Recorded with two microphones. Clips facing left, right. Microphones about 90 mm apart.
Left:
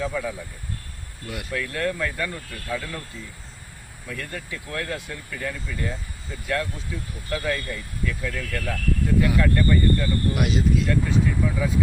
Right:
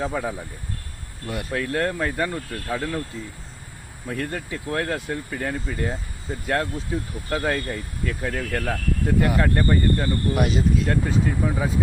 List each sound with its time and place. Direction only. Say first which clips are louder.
0.0 s speech: right 1 dB; 40° right (ahead or behind)
4.0 s speech: right 5 dB; 35° right (ahead or behind)